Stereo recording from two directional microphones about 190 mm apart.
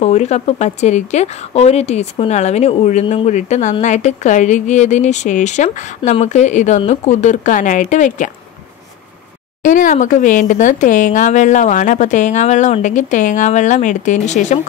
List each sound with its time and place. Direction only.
0.0 s speech: 35° left (ahead or behind)
9.6 s speech: 45° left (ahead or behind)